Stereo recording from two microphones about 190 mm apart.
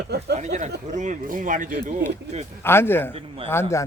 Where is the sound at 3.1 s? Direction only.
30° right (ahead or behind).